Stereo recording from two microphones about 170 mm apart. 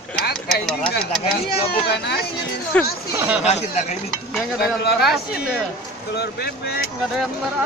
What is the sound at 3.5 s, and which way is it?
Speech, 40° left (ahead or behind).